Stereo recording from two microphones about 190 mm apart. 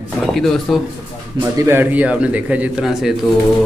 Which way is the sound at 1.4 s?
10° right (ahead or behind).